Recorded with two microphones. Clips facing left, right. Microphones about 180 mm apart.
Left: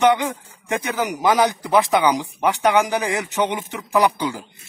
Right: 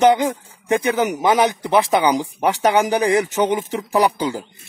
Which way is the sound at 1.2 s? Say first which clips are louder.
Left 3 dB; 25° right (ahead or behind).